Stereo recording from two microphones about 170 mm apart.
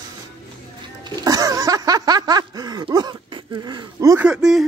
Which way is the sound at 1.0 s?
20° right (ahead or behind).